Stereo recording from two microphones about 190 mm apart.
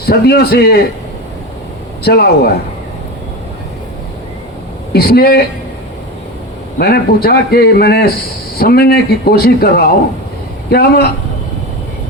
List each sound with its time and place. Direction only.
0.1 s speech: 55° left (ahead or behind)
2.0 s speech: 55° left (ahead or behind)
4.9 s speech: 55° left (ahead or behind)
6.7 s speech: 55° left (ahead or behind)